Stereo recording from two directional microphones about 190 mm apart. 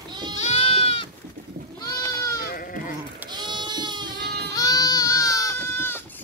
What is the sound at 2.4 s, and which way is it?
Sheep, 50° left (ahead or behind).